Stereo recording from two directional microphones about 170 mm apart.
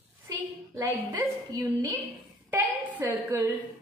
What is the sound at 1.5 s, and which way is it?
A woman's voice, 20° right (ahead or behind).